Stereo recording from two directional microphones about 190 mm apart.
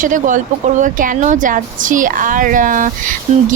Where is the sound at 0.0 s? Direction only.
45° right (ahead or behind).